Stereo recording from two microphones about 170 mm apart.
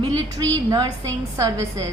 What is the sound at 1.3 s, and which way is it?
Speech, 15° right (ahead or behind).